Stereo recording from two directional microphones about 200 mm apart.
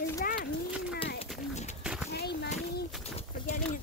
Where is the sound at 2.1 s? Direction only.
55° left (ahead or behind).